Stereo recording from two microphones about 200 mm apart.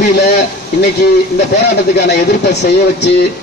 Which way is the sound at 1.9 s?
55° left (ahead or behind).